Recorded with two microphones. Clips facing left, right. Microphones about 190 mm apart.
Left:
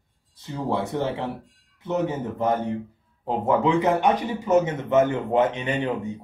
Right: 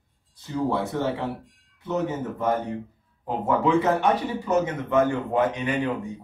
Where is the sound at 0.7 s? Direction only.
20° left (ahead or behind).